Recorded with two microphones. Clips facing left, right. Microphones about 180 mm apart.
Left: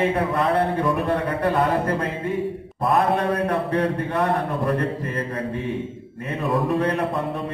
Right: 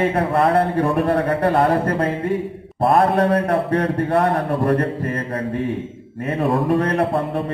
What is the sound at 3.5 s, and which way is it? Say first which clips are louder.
A man's voice: right 3 dB; 60° right (ahead or behind).